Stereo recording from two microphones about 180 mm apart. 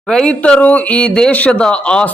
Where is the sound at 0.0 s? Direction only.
5° left (ahead or behind).